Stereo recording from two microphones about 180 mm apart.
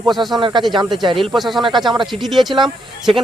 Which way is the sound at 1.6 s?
25° right (ahead or behind).